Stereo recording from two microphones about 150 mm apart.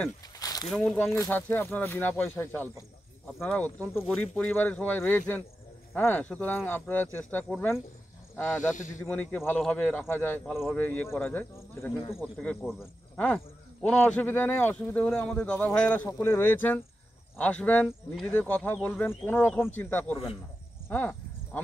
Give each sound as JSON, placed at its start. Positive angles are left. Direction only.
{"t": 0.4, "sound": "a sound", "side_deg": 25}
{"t": 0.7, "sound": "speech", "side_deg": 5}
{"t": 8.7, "sound": "speech", "side_deg": 55}
{"t": 9.0, "sound": "speech", "side_deg": 10}
{"t": 10.4, "sound": "speech", "side_deg": 0}
{"t": 10.8, "sound": "speech", "side_deg": 10}
{"t": 12.4, "sound": "speech", "side_deg": 10}